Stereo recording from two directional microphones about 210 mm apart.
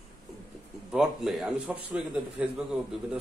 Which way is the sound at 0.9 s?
5° right (ahead or behind).